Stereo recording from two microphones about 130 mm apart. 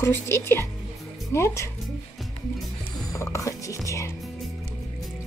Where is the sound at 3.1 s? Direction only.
25° left (ahead or behind).